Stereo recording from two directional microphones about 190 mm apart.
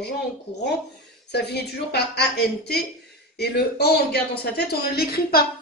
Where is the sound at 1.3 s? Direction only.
60° left (ahead or behind).